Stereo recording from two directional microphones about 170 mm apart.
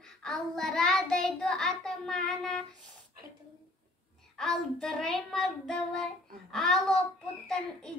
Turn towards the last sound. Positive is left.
turn(degrees=5)  # may be behind; listen again after turning